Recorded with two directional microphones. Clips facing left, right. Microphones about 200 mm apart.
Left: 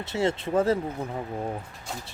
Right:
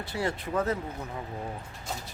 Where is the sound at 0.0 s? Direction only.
25° left (ahead or behind).